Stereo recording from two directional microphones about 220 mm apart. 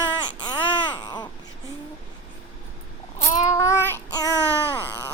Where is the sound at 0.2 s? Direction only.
20° left (ahead or behind).